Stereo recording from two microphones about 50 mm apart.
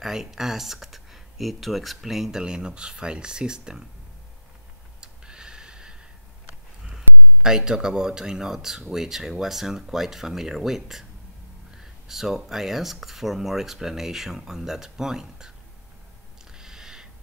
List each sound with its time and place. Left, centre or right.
0.0 s speech: centre
2.4 s speech: centre
5.0 s tick: centre
6.9 s speech: centre
16.5 s a sound: centre